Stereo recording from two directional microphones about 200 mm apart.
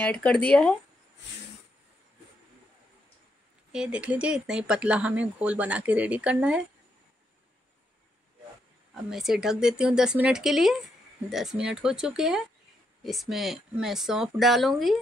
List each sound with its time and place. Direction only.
0.0 s speech: 5° left (ahead or behind)
3.7 s speech: 5° right (ahead or behind)
9.1 s speech: centre (ahead or behind)